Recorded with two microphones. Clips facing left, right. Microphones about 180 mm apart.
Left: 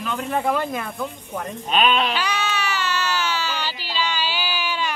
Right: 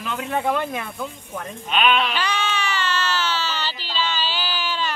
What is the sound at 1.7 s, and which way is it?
Speech, 40° left (ahead or behind).